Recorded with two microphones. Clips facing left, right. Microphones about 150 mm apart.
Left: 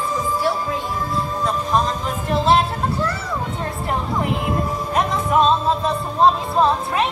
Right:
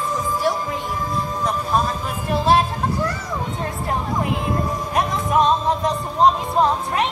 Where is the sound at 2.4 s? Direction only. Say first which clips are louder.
Even; 10° right (ahead or behind).